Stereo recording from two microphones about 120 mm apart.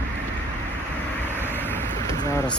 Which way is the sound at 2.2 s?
35° left (ahead or behind).